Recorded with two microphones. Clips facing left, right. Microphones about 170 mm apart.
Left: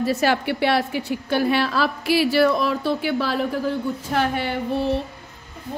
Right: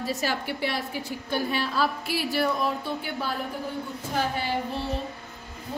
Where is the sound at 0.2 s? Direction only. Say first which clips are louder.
Left 8 dB; 70° left (ahead or behind).